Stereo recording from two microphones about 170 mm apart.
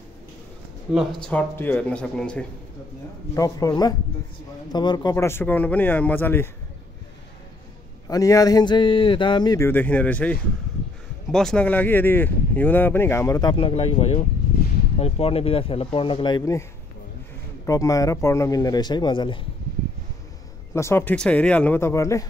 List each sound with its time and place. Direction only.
0.9 s speech: 5° left (ahead or behind)
3.3 s a man's voice: 20° left (ahead or behind)
8.1 s a man's voice: 20° left (ahead or behind)
9.7 s speech: 10° left (ahead or behind)
17.6 s a man's voice: 20° left (ahead or behind)
20.7 s speech: 15° left (ahead or behind)